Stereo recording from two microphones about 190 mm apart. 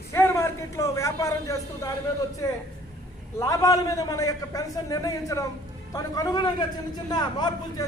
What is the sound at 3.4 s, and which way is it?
A man's voice, 20° left (ahead or behind).